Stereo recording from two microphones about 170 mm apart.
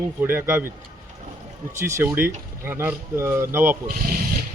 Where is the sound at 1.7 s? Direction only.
15° right (ahead or behind).